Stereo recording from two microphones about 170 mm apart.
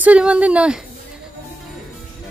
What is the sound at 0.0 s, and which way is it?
Speech, 5° right (ahead or behind).